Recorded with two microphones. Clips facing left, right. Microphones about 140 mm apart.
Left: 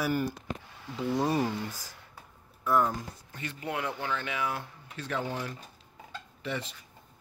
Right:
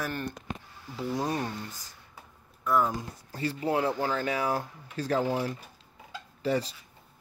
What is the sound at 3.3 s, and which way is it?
Speech, 35° right (ahead or behind).